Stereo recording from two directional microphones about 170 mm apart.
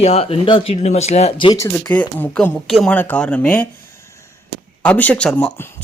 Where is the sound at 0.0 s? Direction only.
35° left (ahead or behind).